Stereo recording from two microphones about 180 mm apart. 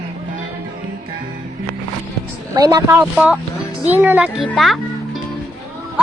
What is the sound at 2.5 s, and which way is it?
Speech, 20° right (ahead or behind).